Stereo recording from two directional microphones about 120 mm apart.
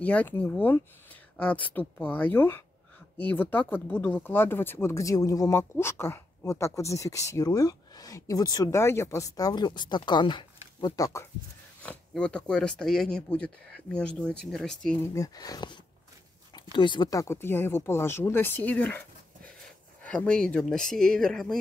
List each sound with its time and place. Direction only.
0.0 s speech: 15° left (ahead or behind); by 10.4 s 40° left (ahead or behind)
10.9 s speech: 25° left (ahead or behind)
12.1 s speech: 10° left (ahead or behind)
15.1 s speech: 30° left (ahead or behind)
17.1 s speech: 25° left (ahead or behind); by 21.5 s 5° left (ahead or behind)